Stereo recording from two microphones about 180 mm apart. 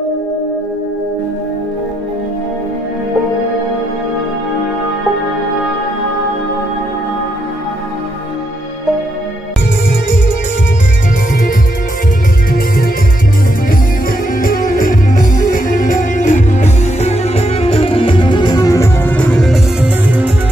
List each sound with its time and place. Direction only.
12.5 s music: 55° left (ahead or behind)
14.3 s music: 50° left (ahead or behind); by 20.2 s 10° right (ahead or behind)